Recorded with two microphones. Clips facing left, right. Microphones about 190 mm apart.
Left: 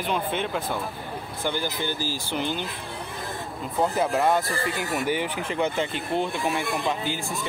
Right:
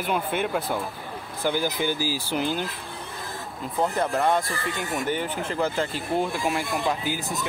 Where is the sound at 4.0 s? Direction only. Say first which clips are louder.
Left 1 dB; 5° left (ahead or behind).